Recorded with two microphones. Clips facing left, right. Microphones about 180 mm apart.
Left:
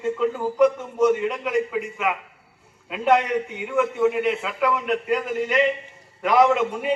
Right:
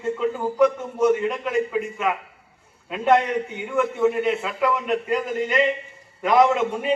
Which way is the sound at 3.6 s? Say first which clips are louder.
Even; centre (ahead or behind).